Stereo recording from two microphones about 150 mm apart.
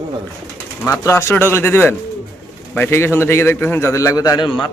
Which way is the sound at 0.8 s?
20° left (ahead or behind).